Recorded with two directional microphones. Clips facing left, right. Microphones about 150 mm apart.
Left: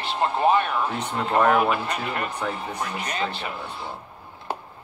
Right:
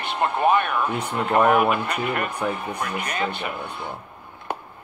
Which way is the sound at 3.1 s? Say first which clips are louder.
Right 1 dB; 55° right (ahead or behind).